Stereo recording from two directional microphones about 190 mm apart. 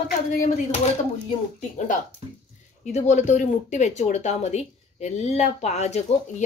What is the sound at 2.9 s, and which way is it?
Speech, 40° left (ahead or behind).